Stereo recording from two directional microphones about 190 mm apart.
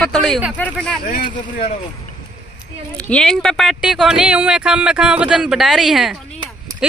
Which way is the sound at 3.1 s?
5° left (ahead or behind).